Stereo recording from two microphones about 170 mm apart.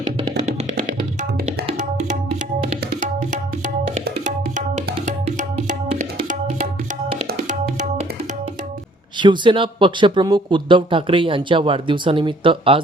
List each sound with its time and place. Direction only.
4.2 s tabla: 45° right (ahead or behind)
5.0 s music: 45° right (ahead or behind)
6.1 s tabla: 55° right (ahead or behind)
7.4 s music: 50° right (ahead or behind)
9.1 s speech: 25° right (ahead or behind)